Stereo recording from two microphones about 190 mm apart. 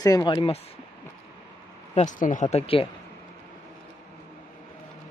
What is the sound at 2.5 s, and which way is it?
Speech, 30° left (ahead or behind).